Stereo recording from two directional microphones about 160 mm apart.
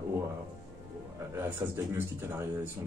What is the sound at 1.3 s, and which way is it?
Speech, 15° right (ahead or behind).